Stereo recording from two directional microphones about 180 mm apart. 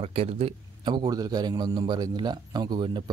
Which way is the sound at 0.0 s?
35° right (ahead or behind).